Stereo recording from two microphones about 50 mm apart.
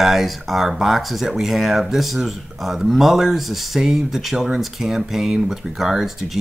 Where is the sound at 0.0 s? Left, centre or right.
Centre.